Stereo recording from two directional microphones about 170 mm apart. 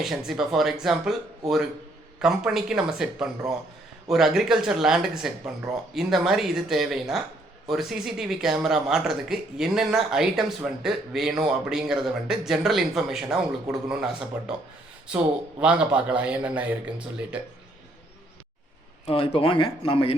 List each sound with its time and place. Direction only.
0.0 s speech: centre (ahead or behind)
15.6 s a man's voice: 5° right (ahead or behind)
19.0 s speech: 35° left (ahead or behind)